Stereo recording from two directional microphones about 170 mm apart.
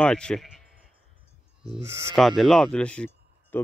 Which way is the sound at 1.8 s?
15° right (ahead or behind).